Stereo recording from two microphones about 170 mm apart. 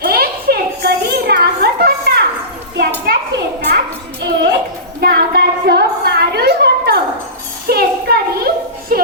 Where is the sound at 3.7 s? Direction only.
70° right (ahead or behind).